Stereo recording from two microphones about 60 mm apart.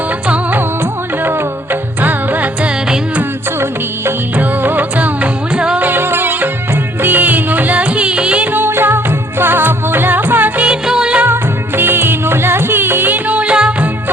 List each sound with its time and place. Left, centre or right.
2.0 s music: right
4.4 s music: right
5.9 s music: right; by 8.4 s centre
8.5 s music: right
10.6 s music: centre
11.8 s music: right; by 13.7 s centre